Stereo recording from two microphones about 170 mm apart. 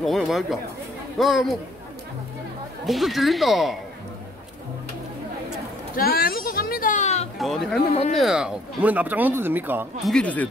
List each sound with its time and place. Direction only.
0.0 s speech: centre (ahead or behind)
2.9 s speech: centre (ahead or behind)
5.9 s a sound: 60° left (ahead or behind); by 7.2 s 45° left (ahead or behind)
7.3 s speech: centre (ahead or behind)
10.0 s speech: 5° left (ahead or behind)